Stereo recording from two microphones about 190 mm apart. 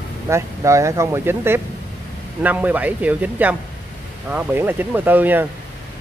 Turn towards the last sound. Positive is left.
turn(degrees=-10)  # may be behind; listen again after turning